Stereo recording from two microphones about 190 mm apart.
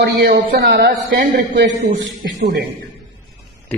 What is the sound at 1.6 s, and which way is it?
Speech, 65° right (ahead or behind).